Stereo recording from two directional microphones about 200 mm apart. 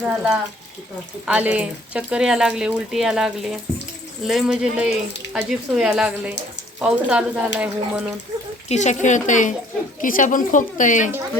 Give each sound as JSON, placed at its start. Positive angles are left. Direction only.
{"t": 0.1, "sound": "speech", "side_deg": -5}
{"t": 8.7, "sound": "a woman's voice", "side_deg": 35}